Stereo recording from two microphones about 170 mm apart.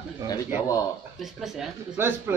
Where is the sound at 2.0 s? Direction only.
15° right (ahead or behind).